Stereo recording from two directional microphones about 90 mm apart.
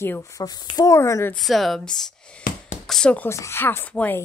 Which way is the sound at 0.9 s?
35° left (ahead or behind).